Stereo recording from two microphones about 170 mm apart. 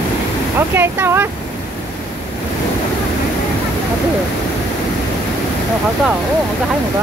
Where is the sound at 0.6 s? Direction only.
15° right (ahead or behind).